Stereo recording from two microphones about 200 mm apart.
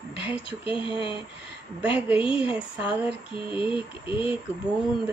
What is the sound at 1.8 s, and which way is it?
Speech, 10° right (ahead or behind).